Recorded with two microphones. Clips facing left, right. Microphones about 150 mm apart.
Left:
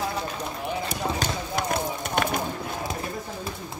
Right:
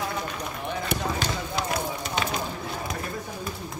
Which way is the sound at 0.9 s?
65° right (ahead or behind).